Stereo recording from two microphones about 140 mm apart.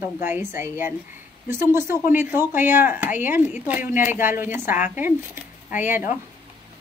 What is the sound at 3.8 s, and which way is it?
Speech, 70° left (ahead or behind).